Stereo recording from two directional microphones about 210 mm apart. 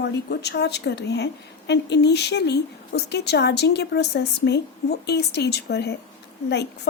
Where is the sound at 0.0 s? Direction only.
50° left (ahead or behind).